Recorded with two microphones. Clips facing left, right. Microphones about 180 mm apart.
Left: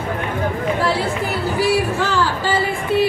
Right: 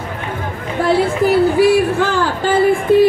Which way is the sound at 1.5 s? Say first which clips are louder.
Right 6 dB; 55° right (ahead or behind).